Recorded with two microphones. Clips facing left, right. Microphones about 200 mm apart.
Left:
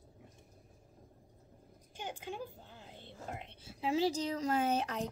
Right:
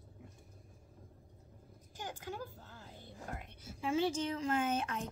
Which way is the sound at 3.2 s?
25° left (ahead or behind).